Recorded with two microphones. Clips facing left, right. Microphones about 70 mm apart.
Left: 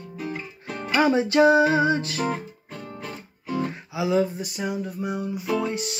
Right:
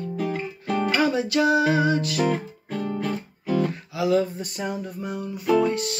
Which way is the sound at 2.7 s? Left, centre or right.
Right.